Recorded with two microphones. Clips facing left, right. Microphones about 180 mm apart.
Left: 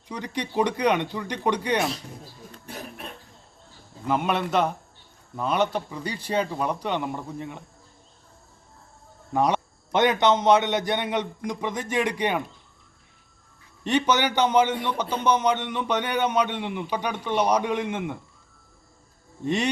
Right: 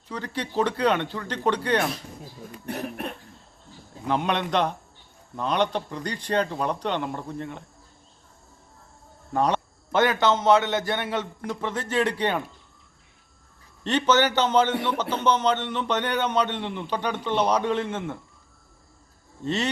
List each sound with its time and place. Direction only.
0.1 s a man's voice: 15° left (ahead or behind)
2.6 s cough: 60° right (ahead or behind)
4.0 s a man's voice: 5° left (ahead or behind)
9.3 s a man's voice: 10° left (ahead or behind)
13.8 s a man's voice: 10° left (ahead or behind)
19.5 s a man's voice: 15° left (ahead or behind)